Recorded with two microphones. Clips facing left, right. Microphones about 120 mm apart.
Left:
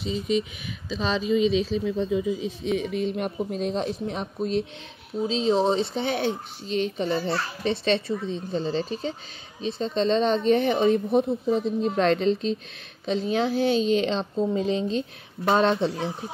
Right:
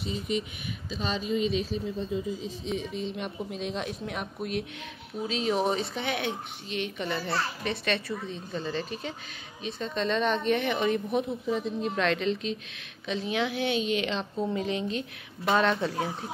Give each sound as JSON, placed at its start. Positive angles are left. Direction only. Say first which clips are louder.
{"t": 0.8, "sound": "speech", "louder": "left 6 dB", "side_deg": 90}
{"t": 3.5, "sound": "speech", "louder": "left 6 dB", "side_deg": 40}